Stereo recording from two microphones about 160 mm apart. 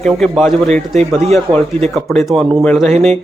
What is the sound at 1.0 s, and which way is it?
Speech, 45° right (ahead or behind).